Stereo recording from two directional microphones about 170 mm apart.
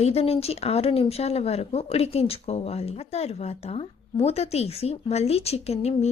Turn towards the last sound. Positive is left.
turn(degrees=40)  # may be behind; listen again after turning